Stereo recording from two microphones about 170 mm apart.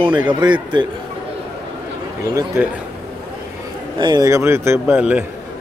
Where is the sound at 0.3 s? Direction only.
25° right (ahead or behind).